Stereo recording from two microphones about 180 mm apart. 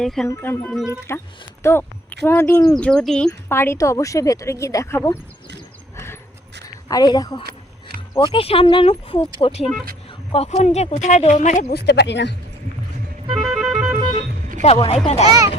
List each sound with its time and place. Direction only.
0.0 s music: centre (ahead or behind)
0.3 s speech: 15° left (ahead or behind)
6.8 s a woman's voice: 20° left (ahead or behind)
7.4 s keys jangling: 55° right (ahead or behind)
8.1 s speech: 30° left (ahead or behind)
11.7 s speech: 65° left (ahead or behind)
13.3 s music: centre (ahead or behind)
14.6 s speech: 40° left (ahead or behind)